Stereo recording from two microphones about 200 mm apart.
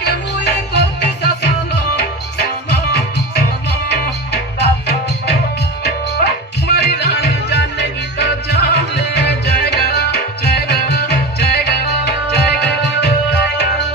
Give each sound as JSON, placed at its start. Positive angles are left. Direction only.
{"t": 0.0, "sound": "music", "side_deg": 55}
{"t": 6.7, "sound": "music", "side_deg": 55}